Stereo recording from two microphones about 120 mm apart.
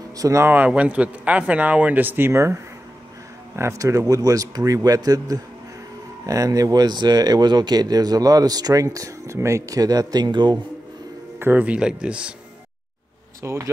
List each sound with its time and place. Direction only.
0.2 s speech: 25° right (ahead or behind)
11.3 s speech: 15° right (ahead or behind)
13.4 s speech: 25° right (ahead or behind)